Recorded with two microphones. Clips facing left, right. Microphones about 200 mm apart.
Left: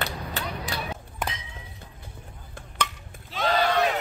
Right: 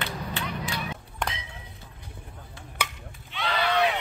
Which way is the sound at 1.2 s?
5° left (ahead or behind).